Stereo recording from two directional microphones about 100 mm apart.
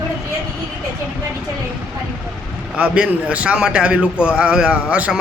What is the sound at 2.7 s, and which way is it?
A man's voice, 10° right (ahead or behind).